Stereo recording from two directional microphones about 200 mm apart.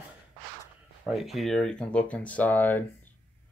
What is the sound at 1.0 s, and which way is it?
Speech, centre (ahead or behind).